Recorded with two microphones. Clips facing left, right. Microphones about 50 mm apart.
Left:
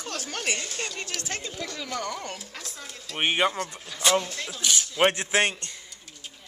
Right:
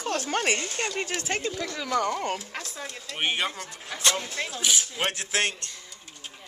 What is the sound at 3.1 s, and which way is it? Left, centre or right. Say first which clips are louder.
Speech: left 4 dB; centre.